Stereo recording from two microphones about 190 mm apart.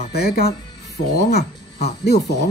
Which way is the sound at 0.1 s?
55° left (ahead or behind).